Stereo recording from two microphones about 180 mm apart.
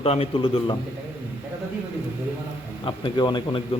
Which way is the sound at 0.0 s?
35° left (ahead or behind).